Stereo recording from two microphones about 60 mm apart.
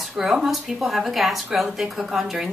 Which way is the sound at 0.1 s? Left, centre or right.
Centre.